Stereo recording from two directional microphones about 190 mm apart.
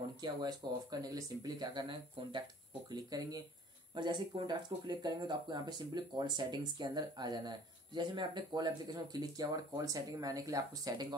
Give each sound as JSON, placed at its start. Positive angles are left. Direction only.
{"t": 0.2, "sound": "speech", "side_deg": -20}